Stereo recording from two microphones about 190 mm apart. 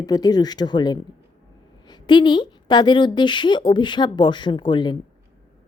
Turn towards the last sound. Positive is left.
turn(degrees=25)  # may be behind; listen again after turning